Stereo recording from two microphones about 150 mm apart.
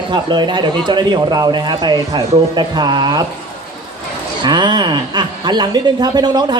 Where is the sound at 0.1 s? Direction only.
30° right (ahead or behind).